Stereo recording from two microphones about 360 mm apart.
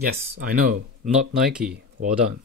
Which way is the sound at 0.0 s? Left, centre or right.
Right.